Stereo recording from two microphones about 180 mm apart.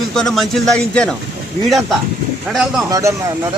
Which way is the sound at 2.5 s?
Centre (ahead or behind).